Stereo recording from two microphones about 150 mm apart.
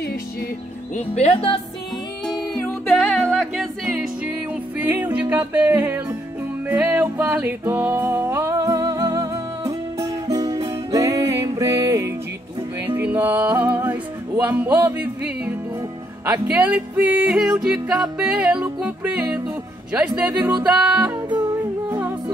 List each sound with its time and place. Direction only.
0.0 s music: 90° left
0.9 s speech: 45° left (ahead or behind)
2.5 s music: 5° left (ahead or behind); by 22.1 s 15° right (ahead or behind)